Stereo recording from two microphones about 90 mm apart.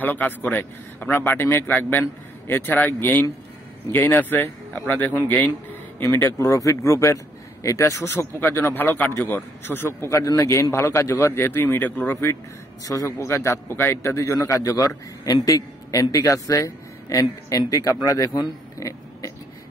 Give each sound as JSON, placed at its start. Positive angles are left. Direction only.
{"t": 0.0, "sound": "speech", "side_deg": 20}
{"t": 6.2, "sound": "a man's voice", "side_deg": 30}
{"t": 12.8, "sound": "a man's voice", "side_deg": 40}